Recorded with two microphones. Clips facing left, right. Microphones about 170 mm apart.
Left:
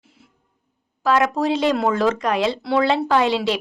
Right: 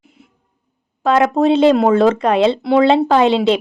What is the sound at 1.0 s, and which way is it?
A woman's voice, 25° right (ahead or behind).